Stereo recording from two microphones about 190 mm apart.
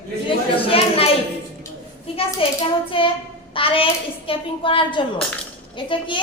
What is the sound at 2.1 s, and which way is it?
A child's voice, 30° left (ahead or behind).